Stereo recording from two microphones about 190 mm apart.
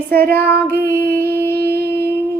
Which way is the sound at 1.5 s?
55° right (ahead or behind).